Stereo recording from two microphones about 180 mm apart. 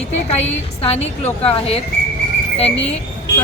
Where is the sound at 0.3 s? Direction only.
35° left (ahead or behind).